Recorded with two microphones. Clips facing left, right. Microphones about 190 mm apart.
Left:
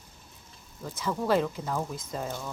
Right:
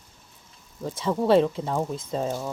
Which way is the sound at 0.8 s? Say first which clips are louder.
Right 6 dB; 25° right (ahead or behind).